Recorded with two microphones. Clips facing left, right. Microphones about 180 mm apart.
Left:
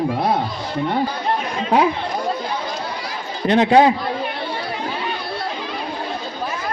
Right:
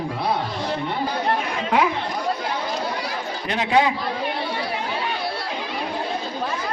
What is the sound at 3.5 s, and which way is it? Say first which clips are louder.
Speech: left 7 dB; 40° left (ahead or behind).